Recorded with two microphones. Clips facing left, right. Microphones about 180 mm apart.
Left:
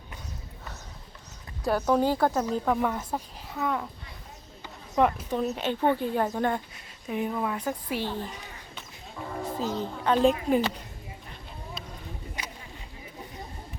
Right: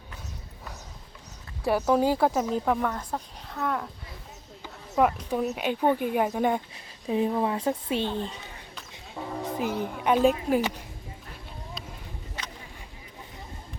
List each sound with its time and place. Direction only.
1.6 s speech: 5° right (ahead or behind)
2.8 s speech: 5° left (ahead or behind)
4.6 s a sound: 5° right (ahead or behind)
5.3 s speech: 10° right (ahead or behind)
6.7 s speech: 30° right (ahead or behind)
9.6 s speech: 15° right (ahead or behind)
12.4 s a sound: 15° left (ahead or behind)